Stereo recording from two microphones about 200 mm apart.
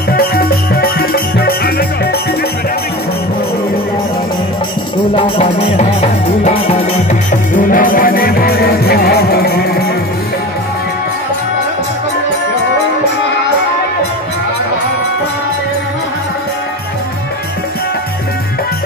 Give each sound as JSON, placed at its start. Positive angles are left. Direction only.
{"t": 0.1, "sound": "music", "side_deg": 50}
{"t": 5.1, "sound": "music", "side_deg": 30}